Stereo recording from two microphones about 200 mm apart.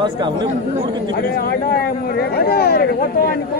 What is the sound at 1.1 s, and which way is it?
Speech, 50° left (ahead or behind).